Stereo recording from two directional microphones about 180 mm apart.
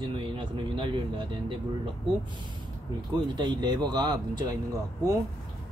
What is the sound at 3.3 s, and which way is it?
Speech, 25° right (ahead or behind).